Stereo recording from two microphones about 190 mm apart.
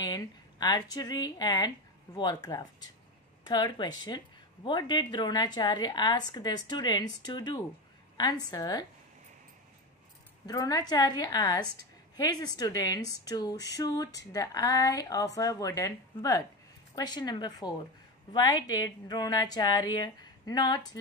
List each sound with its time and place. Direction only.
0.0 s a woman's voice: 20° left (ahead or behind)
10.4 s a woman's voice: 20° left (ahead or behind)